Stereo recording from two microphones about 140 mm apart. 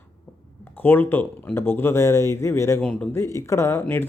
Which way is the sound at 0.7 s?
15° left (ahead or behind).